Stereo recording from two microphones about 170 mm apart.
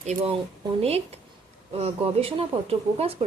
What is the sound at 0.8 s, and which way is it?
Speech, 35° right (ahead or behind).